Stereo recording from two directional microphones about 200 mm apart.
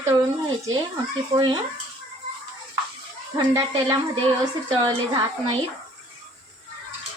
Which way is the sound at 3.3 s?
15° right (ahead or behind).